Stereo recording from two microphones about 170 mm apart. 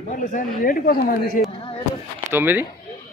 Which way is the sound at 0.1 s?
55° left (ahead or behind).